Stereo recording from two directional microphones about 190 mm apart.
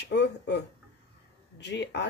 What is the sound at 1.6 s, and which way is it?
Speech, 65° left (ahead or behind).